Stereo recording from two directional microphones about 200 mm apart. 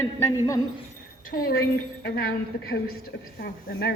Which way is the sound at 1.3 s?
50° left (ahead or behind).